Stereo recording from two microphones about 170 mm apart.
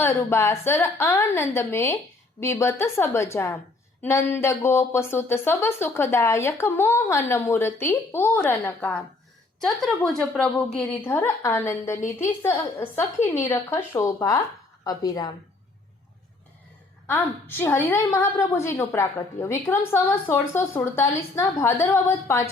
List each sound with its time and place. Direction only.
0.0 s speech: 15° left (ahead or behind)
17.1 s speech: 10° left (ahead or behind)